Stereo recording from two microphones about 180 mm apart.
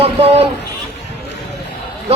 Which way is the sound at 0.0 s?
35° right (ahead or behind).